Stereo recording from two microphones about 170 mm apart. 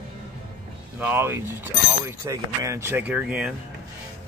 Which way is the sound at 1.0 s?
10° right (ahead or behind).